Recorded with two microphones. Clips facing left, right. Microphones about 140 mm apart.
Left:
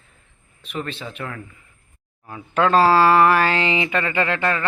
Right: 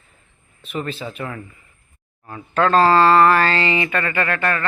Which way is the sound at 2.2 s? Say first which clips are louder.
Right 1 dB; 10° left (ahead or behind).